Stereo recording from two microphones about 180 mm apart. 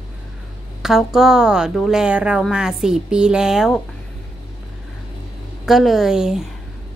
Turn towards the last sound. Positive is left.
turn(degrees=-5)  # may be behind; listen again after turning